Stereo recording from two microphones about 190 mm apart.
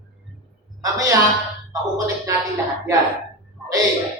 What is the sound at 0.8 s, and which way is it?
Speech, 15° right (ahead or behind).